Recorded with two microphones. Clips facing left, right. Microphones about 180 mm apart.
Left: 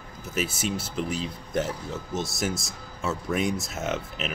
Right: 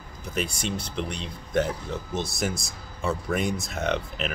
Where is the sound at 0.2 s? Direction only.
5° left (ahead or behind).